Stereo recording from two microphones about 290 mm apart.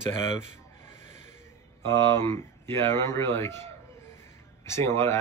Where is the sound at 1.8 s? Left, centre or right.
Centre.